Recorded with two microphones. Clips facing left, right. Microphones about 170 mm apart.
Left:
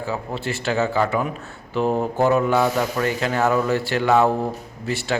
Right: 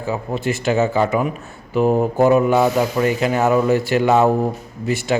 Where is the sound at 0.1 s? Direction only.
15° right (ahead or behind).